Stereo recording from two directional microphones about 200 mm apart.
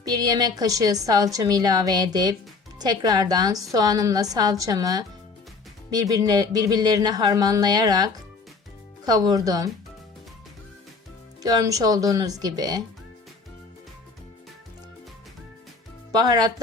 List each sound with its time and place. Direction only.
0.0 s a woman's voice: 20° right (ahead or behind)
11.4 s a woman's voice: 20° right (ahead or behind)
16.1 s a woman's voice: 20° right (ahead or behind)